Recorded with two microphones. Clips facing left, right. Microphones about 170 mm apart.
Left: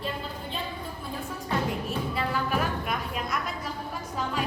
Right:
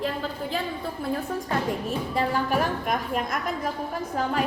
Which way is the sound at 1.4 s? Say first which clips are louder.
Left 2 dB; 45° right (ahead or behind).